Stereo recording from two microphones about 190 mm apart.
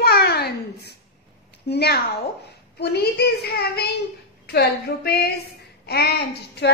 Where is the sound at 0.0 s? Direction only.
55° left (ahead or behind).